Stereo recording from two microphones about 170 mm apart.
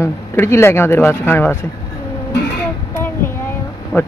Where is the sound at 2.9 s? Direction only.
15° left (ahead or behind).